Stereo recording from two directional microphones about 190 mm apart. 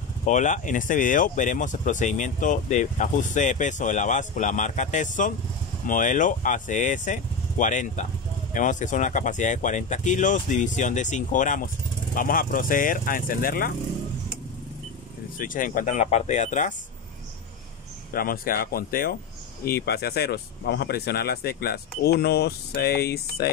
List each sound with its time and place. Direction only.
0.3 s speech: 40° left (ahead or behind)
15.3 s speech: 45° left (ahead or behind)
18.1 s speech: 50° left (ahead or behind)